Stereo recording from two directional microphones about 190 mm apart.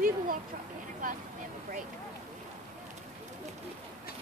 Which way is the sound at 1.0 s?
45° right (ahead or behind).